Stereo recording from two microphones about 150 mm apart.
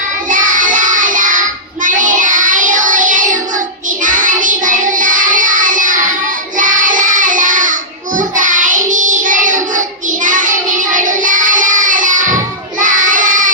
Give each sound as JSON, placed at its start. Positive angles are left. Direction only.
{"t": 0.3, "sound": "child singing", "side_deg": -60}